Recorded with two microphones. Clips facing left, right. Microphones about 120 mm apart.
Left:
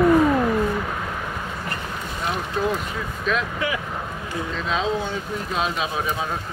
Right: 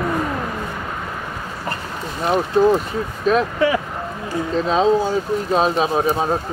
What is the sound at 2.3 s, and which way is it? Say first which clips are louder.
Speech: right 10 dB; 35° right (ahead or behind).